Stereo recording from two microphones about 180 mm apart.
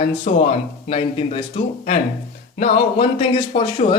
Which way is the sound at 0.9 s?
30° left (ahead or behind).